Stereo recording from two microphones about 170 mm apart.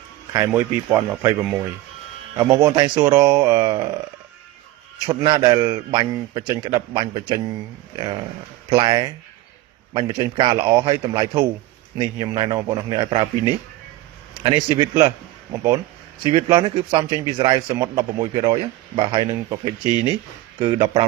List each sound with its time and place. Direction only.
0.3 s speech: 15° right (ahead or behind)
2.4 s speech: 20° right (ahead or behind)
5.0 s speech: 25° right (ahead or behind)
16.2 s speech: 30° right (ahead or behind)